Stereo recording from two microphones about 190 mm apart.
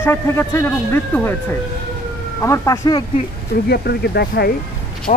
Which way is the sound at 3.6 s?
60° left (ahead or behind).